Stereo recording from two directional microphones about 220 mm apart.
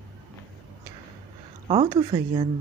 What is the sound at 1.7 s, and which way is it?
Speech, 25° right (ahead or behind).